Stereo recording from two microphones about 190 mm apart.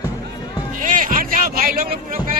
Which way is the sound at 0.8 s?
45° right (ahead or behind).